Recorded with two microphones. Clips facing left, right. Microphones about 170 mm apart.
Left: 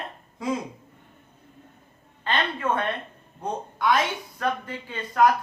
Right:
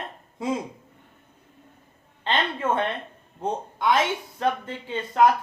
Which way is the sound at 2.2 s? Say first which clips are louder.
Right 1 dB; 25° right (ahead or behind).